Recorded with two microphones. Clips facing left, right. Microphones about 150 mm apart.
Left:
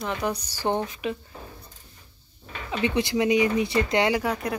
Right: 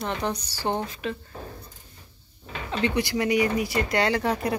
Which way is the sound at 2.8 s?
20° left (ahead or behind).